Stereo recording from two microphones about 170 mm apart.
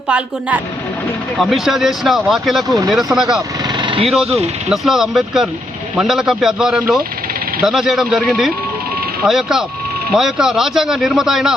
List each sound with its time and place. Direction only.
1.4 s speech: centre (ahead or behind)
2.6 s speech: 20° right (ahead or behind)
3.2 s speech: centre (ahead or behind)
3.8 s a sound: 30° right (ahead or behind)
4.7 s speech: centre (ahead or behind)